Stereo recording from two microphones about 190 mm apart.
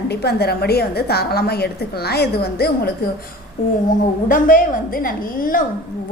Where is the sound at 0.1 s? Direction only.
60° left (ahead or behind).